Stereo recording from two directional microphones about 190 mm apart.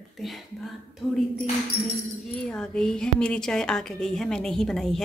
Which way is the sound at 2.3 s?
5° left (ahead or behind).